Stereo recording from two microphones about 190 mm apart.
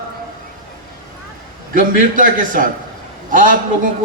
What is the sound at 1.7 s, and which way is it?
A man's voice, 45° right (ahead or behind).